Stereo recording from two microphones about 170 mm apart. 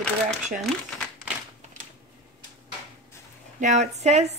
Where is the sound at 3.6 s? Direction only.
45° right (ahead or behind).